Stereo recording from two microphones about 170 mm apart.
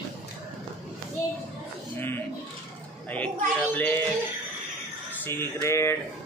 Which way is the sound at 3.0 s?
10° left (ahead or behind).